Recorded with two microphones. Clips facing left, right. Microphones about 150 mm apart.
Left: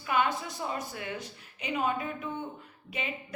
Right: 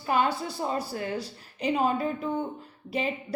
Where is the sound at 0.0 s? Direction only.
35° right (ahead or behind).